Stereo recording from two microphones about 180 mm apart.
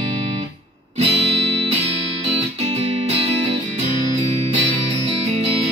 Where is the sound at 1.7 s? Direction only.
35° right (ahead or behind).